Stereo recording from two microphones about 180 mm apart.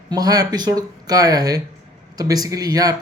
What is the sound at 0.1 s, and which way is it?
Speech, 20° right (ahead or behind).